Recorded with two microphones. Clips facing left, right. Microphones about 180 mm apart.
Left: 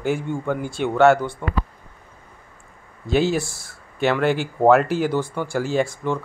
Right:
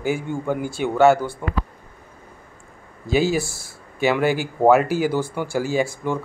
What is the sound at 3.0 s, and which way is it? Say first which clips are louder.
Speech: even; 5° right (ahead or behind).